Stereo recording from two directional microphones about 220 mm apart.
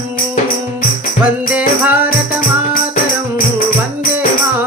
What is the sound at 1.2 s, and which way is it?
Music, 5° right (ahead or behind).